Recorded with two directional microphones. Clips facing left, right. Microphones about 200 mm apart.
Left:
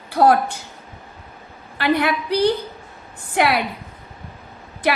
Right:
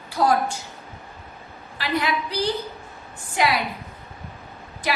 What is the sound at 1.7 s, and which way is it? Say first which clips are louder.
A woman's voice: left 5 dB; 60° left (ahead or behind).